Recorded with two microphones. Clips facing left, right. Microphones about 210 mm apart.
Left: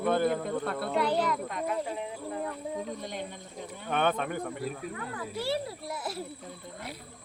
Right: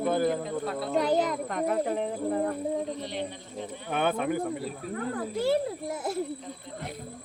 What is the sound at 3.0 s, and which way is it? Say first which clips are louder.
Speech: right 4 dB; 45° left (ahead or behind).